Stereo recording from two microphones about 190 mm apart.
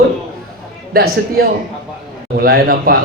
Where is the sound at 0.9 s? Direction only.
50° right (ahead or behind).